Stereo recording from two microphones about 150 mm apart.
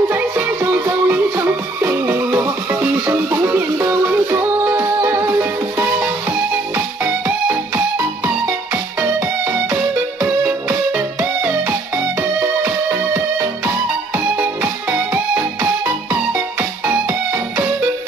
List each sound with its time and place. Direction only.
0.1 s music: 15° right (ahead or behind)
7.2 s music: 20° right (ahead or behind)
10.2 s music: 10° right (ahead or behind)